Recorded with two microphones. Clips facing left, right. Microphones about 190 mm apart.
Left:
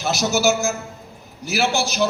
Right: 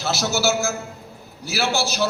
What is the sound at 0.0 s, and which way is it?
A man's voice, 15° left (ahead or behind).